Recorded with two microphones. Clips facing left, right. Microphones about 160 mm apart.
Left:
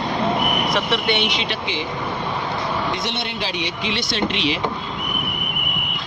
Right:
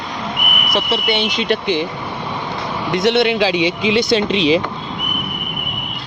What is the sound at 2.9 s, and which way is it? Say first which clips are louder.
Speech: right 12 dB; 65° right (ahead or behind).